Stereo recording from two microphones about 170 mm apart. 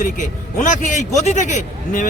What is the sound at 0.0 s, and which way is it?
A man's voice, 50° left (ahead or behind).